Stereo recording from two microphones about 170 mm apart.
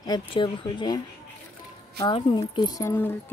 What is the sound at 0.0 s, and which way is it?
Speech, 25° left (ahead or behind).